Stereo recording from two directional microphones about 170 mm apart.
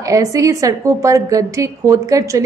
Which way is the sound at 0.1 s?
20° right (ahead or behind).